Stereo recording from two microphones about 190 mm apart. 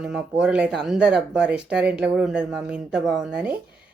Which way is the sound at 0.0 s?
5° right (ahead or behind).